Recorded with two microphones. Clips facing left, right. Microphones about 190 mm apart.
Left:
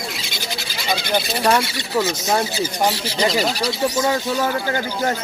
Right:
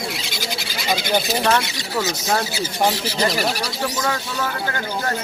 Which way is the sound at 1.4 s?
10° left (ahead or behind).